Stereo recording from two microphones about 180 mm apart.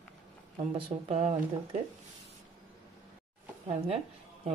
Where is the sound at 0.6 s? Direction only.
35° right (ahead or behind).